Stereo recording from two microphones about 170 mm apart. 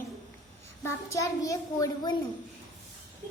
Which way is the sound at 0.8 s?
20° left (ahead or behind).